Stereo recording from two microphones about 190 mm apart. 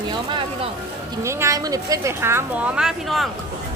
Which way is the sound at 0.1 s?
25° right (ahead or behind).